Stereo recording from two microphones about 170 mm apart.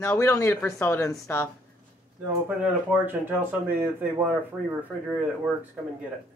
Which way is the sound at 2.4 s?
10° right (ahead or behind).